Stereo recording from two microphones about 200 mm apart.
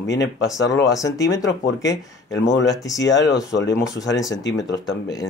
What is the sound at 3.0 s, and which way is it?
Speech, 60° left (ahead or behind).